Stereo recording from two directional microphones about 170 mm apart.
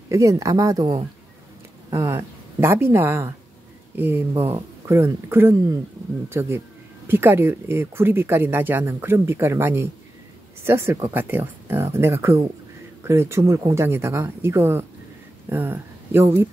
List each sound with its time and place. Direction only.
0.1 s a woman's voice: 20° right (ahead or behind)